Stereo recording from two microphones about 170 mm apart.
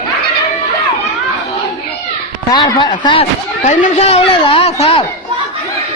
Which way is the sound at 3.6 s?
45° left (ahead or behind).